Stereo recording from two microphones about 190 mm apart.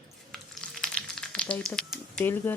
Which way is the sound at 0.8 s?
5° left (ahead or behind).